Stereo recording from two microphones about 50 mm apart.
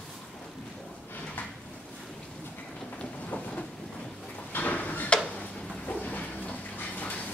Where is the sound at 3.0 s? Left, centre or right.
Left.